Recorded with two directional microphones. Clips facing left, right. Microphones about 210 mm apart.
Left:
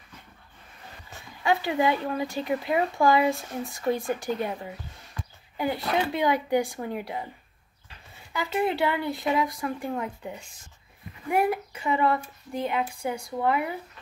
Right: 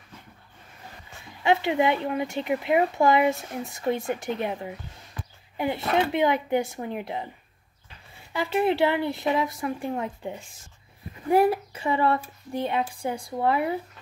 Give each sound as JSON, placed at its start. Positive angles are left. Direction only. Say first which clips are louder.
{"t": 1.4, "sound": "speech", "louder": "right 2 dB", "side_deg": -25}
{"t": 8.3, "sound": "speech", "louder": "right 3 dB", "side_deg": -25}